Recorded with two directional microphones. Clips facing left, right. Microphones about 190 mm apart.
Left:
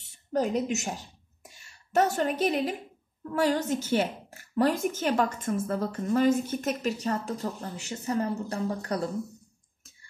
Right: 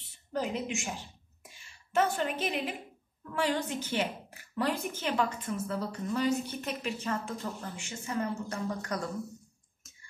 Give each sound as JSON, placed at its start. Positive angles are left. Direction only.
{"t": 0.0, "sound": "a woman's voice", "side_deg": 40}